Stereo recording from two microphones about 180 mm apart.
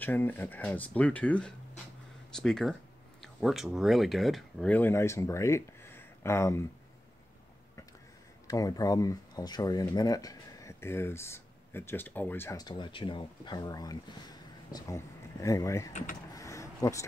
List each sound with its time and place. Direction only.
0.0 s speech: 10° left (ahead or behind)
8.5 s speech: 20° left (ahead or behind)
16.3 s a sound: 15° left (ahead or behind)